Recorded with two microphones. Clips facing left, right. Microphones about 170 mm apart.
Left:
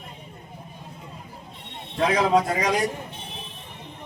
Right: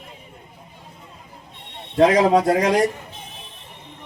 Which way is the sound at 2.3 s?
65° right (ahead or behind).